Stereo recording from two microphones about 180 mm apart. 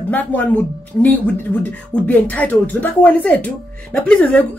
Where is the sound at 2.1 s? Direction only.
10° left (ahead or behind).